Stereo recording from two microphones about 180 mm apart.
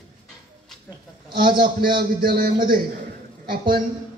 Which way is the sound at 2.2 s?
55° right (ahead or behind).